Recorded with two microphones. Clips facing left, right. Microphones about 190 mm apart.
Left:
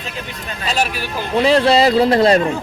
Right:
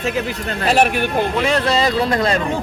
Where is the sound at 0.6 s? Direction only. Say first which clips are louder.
Right 6 dB; 60° right (ahead or behind).